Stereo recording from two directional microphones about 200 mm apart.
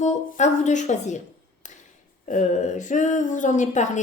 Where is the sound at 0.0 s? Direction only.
35° left (ahead or behind).